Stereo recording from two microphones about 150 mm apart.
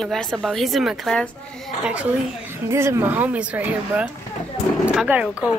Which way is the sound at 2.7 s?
15° right (ahead or behind).